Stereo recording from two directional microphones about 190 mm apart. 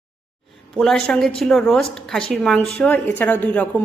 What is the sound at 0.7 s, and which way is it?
A woman's voice, centre (ahead or behind).